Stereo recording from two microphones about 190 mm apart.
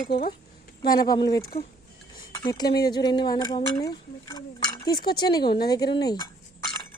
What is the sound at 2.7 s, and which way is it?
Speech, 55° left (ahead or behind).